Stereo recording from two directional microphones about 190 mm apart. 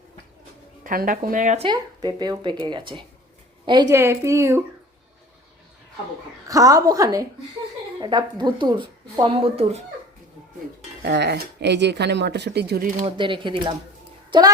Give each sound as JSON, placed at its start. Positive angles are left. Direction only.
{"t": 0.9, "sound": "speech", "side_deg": -45}
{"t": 1.6, "sound": "a woman's voice", "side_deg": -20}
{"t": 6.5, "sound": "a woman's voice", "side_deg": -20}
{"t": 11.0, "sound": "speech", "side_deg": -65}
{"t": 13.1, "sound": "a child's voice", "side_deg": -25}